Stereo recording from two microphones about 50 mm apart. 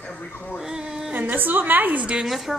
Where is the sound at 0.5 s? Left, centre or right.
Centre.